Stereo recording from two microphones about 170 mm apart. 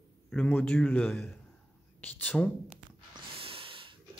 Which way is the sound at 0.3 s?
10° left (ahead or behind).